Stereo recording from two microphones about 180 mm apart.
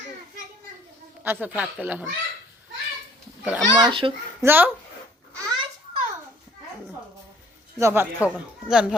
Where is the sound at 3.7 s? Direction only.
25° right (ahead or behind).